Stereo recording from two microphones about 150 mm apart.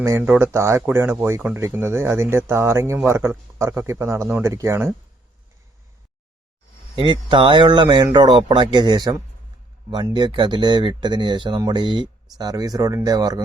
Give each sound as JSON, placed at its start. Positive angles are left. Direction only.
{"t": 0.0, "sound": "speech", "side_deg": -15}
{"t": 6.9, "sound": "speech", "side_deg": -30}